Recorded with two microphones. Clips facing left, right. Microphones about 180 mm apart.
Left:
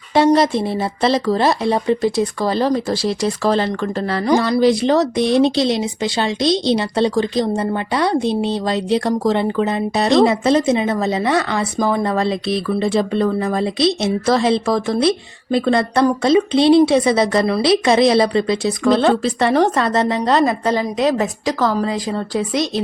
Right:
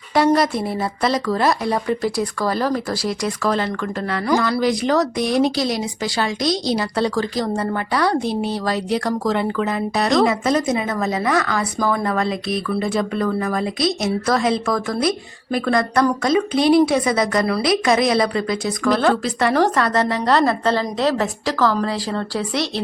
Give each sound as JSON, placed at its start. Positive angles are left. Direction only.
{"t": 0.1, "sound": "speech", "side_deg": 25}